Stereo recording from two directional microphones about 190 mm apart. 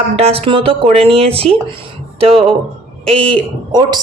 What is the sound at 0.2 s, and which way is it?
Speech, 30° right (ahead or behind).